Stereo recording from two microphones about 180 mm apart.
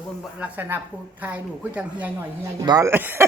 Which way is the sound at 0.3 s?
10° right (ahead or behind).